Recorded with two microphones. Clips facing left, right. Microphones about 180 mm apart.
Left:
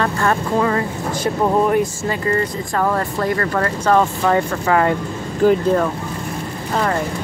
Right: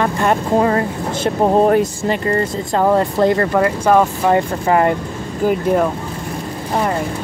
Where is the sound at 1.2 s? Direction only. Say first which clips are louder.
Right 4 dB; 35° right (ahead or behind).